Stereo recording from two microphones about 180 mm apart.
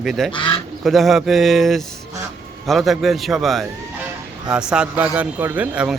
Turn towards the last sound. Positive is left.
turn(degrees=-5)  # may be behind; listen again after turning